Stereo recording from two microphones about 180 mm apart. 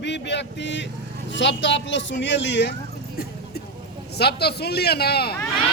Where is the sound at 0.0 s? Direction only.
75° left (ahead or behind).